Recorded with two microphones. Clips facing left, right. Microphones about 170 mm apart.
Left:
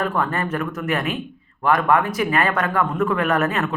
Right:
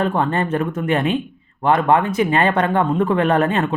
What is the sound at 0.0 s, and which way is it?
Speech, 25° right (ahead or behind).